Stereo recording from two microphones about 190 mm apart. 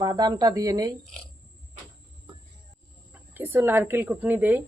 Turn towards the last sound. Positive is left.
turn(degrees=-10)  # may be behind; listen again after turning